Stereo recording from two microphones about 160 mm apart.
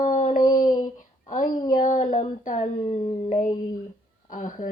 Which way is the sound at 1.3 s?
60° left (ahead or behind).